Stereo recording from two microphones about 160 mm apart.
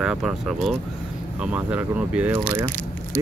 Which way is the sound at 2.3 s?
25° right (ahead or behind).